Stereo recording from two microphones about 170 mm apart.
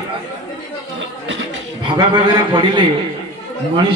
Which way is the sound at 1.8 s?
25° right (ahead or behind).